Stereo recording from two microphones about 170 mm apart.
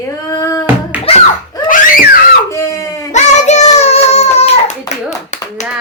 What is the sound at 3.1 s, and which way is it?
Child singing, 45° left (ahead or behind).